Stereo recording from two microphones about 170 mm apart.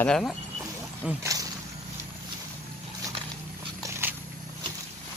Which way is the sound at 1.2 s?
20° right (ahead or behind).